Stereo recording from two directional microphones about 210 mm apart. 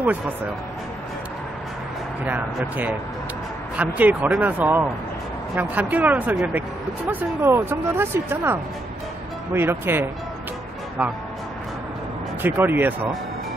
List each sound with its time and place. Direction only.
2.2 s speech: 10° right (ahead or behind)
12.4 s speech: 10° right (ahead or behind)